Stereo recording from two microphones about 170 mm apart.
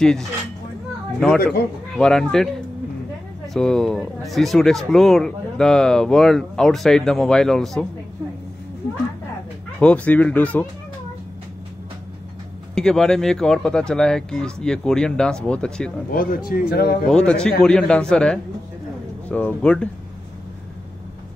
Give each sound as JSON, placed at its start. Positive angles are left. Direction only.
{"t": 0.0, "sound": "speech", "side_deg": 5}
{"t": 2.0, "sound": "speech", "side_deg": 5}
{"t": 3.5, "sound": "speech", "side_deg": 5}
{"t": 9.8, "sound": "speech", "side_deg": 10}
{"t": 12.7, "sound": "speech", "side_deg": 5}
{"t": 16.1, "sound": "a man's voice", "side_deg": 55}
{"t": 17.1, "sound": "speech", "side_deg": 5}